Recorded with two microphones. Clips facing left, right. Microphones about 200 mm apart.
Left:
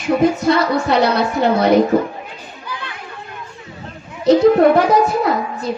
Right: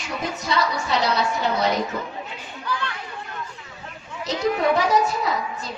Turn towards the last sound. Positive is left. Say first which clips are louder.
# left 7 dB
turn(degrees=60)  # may be behind; listen again after turning